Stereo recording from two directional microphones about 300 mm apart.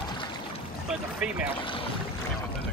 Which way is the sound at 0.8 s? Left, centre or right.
Centre.